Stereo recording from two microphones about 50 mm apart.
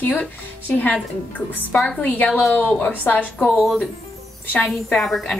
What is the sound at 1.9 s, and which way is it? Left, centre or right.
A woman's voice, left.